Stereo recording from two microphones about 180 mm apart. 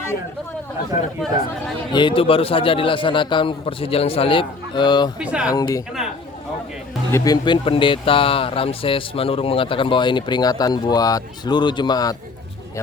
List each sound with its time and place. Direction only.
1.9 s speech: 25° left (ahead or behind)
5.2 s speech: 5° right (ahead or behind)
5.5 s speech: 20° left (ahead or behind)
7.1 s speech: 25° left (ahead or behind)